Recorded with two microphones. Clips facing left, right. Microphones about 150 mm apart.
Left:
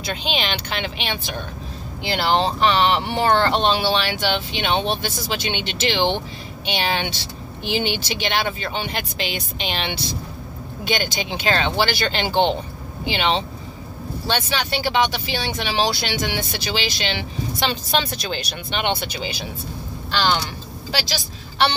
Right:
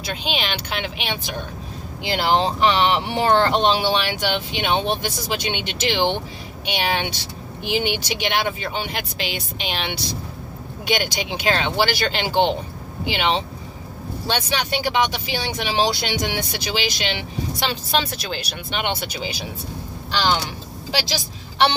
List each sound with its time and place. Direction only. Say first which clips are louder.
0.0 s a woman's voice: left 1 dB; 5° right (ahead or behind)